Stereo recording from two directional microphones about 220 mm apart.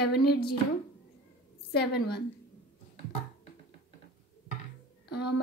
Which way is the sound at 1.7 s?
50° left (ahead or behind).